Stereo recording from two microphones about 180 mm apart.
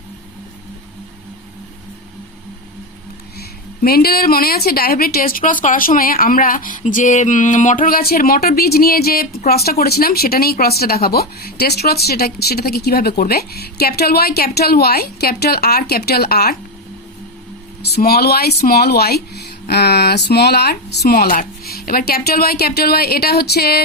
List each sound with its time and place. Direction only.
3.8 s a woman's voice: 55° left (ahead or behind)
17.8 s speech: 60° left (ahead or behind)